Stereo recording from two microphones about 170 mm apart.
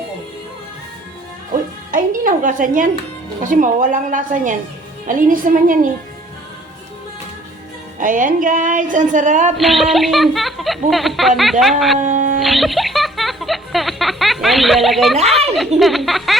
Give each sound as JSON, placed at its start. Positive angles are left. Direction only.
{"t": 1.9, "sound": "a woman's voice", "side_deg": -50}
{"t": 7.9, "sound": "speech", "side_deg": -50}
{"t": 9.6, "sound": "speech", "side_deg": 0}
{"t": 11.9, "sound": "a sound", "side_deg": -45}
{"t": 12.4, "sound": "music", "side_deg": 0}
{"t": 15.2, "sound": "speech", "side_deg": -35}
{"t": 15.4, "sound": "speech", "side_deg": 0}